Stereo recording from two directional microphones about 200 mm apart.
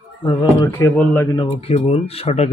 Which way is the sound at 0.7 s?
10° left (ahead or behind).